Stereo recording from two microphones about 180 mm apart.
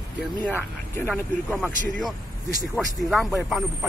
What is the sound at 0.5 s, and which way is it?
Speech, 10° left (ahead or behind).